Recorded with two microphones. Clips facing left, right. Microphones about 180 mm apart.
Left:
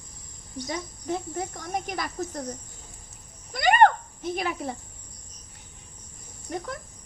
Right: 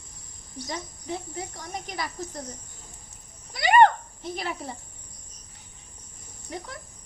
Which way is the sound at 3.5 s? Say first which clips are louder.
Right 1 dB; 50° left (ahead or behind).